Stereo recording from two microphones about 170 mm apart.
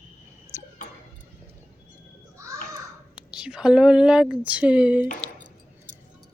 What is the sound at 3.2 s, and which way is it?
Speech, 5° right (ahead or behind).